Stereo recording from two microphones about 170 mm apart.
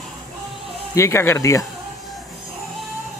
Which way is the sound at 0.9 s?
15° left (ahead or behind).